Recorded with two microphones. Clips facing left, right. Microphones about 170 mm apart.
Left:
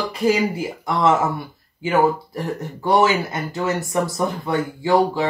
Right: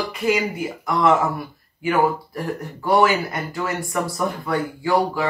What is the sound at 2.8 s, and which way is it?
Speech, 20° left (ahead or behind).